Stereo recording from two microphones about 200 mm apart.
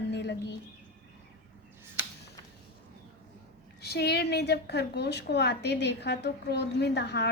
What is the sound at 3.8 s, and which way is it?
A woman's voice, 55° left (ahead or behind).